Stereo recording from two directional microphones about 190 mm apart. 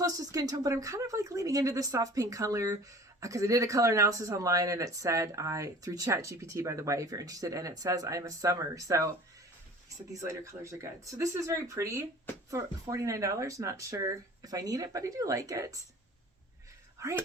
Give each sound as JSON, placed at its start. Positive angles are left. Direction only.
{"t": 0.0, "sound": "speech", "side_deg": -20}
{"t": 10.1, "sound": "speech", "side_deg": -15}
{"t": 17.0, "sound": "speech", "side_deg": -15}